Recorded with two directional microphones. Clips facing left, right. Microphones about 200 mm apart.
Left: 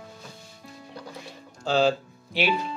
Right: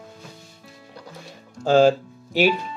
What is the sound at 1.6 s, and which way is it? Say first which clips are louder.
Speech: right 7 dB; 50° right (ahead or behind).